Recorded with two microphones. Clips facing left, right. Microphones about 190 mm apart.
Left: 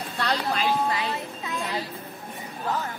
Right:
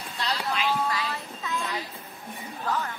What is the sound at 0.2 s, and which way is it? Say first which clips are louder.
Vehicle: left 4 dB; 55° left (ahead or behind).